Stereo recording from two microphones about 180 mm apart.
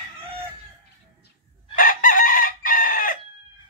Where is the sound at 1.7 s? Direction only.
50° left (ahead or behind).